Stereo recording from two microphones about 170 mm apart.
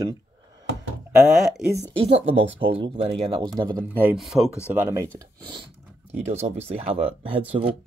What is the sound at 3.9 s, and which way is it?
Speech, 10° right (ahead or behind).